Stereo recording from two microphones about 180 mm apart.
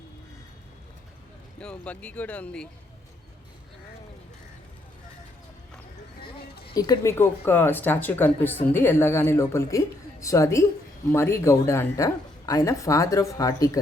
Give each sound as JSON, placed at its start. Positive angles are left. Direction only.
{"t": 1.5, "sound": "speech", "side_deg": 5}
{"t": 6.7, "sound": "speech", "side_deg": 20}